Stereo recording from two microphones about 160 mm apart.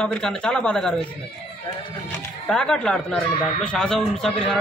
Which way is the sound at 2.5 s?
5° left (ahead or behind).